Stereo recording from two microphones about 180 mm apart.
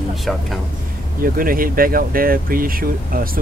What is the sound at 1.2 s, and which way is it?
Speech, 50° right (ahead or behind).